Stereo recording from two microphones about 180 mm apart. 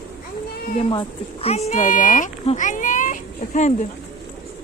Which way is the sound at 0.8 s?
30° left (ahead or behind).